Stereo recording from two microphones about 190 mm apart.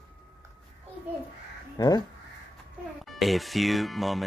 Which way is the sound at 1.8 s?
20° left (ahead or behind).